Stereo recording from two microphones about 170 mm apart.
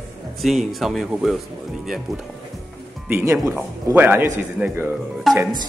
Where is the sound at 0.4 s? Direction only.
Centre (ahead or behind).